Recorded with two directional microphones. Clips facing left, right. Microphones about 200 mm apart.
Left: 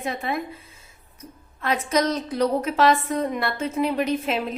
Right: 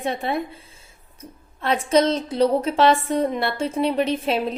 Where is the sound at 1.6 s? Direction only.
30° right (ahead or behind).